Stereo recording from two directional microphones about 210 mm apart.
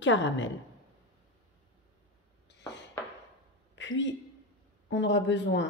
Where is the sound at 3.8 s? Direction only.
60° left (ahead or behind).